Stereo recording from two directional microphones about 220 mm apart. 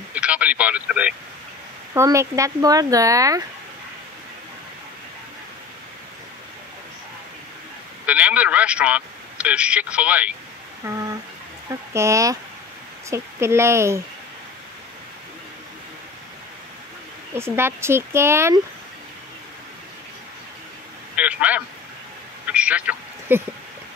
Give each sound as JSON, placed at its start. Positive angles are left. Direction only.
{"t": 0.1, "sound": "speech", "side_deg": -5}
{"t": 8.1, "sound": "speech", "side_deg": -5}
{"t": 10.9, "sound": "a sound", "side_deg": -15}
{"t": 11.9, "sound": "speech", "side_deg": -15}
{"t": 17.4, "sound": "speech", "side_deg": -10}
{"t": 21.2, "sound": "speech", "side_deg": -5}
{"t": 22.5, "sound": "a sound", "side_deg": -5}